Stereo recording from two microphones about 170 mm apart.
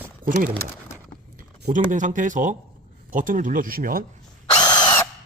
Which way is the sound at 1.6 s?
50° right (ahead or behind).